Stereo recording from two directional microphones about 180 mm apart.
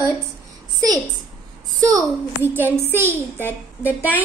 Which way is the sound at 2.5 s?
10° right (ahead or behind).